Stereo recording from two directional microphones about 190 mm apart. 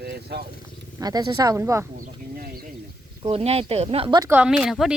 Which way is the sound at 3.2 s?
30° right (ahead or behind).